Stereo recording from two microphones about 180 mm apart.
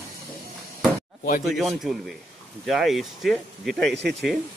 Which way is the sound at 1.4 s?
Centre (ahead or behind).